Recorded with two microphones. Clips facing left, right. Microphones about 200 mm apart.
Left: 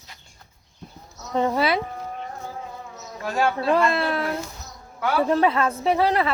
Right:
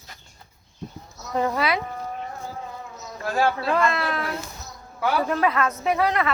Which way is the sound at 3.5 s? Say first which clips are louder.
Left 2 dB; 30° left (ahead or behind).